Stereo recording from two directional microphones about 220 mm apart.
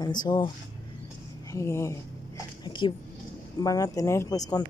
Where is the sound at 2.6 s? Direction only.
20° left (ahead or behind).